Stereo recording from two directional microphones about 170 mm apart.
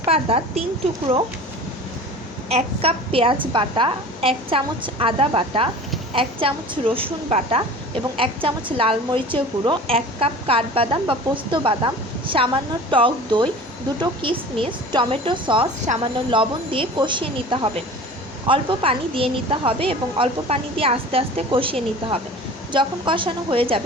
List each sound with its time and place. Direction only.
0.0 s a woman's voice: 35° right (ahead or behind)
2.5 s a woman's voice: 35° right (ahead or behind)
15.9 s a woman's voice: 45° right (ahead or behind)
16.3 s a woman's voice: 30° right (ahead or behind)